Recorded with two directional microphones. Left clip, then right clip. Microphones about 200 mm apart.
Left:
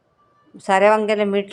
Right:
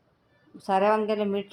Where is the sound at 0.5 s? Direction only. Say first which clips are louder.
Left 8 dB; 25° left (ahead or behind).